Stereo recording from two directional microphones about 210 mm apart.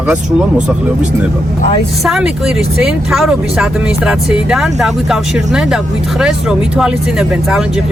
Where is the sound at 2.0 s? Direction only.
Centre (ahead or behind).